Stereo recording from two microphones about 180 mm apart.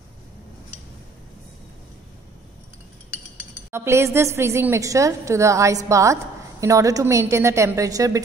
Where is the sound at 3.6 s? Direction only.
15° right (ahead or behind).